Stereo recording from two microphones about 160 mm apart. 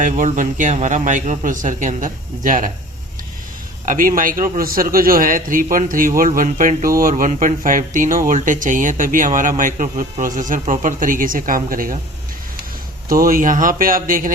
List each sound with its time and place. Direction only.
0.0 s a man's voice: 55° right (ahead or behind)
3.8 s speech: 60° right (ahead or behind)
13.1 s speech: 65° right (ahead or behind)